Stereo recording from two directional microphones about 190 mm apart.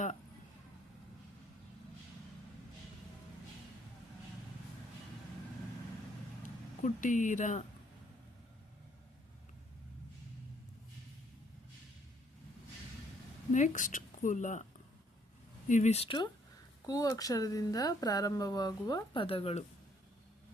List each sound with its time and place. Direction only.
6.4 s speech: 45° left (ahead or behind)
13.5 s a woman's voice: 40° left (ahead or behind)
15.7 s speech: 35° left (ahead or behind)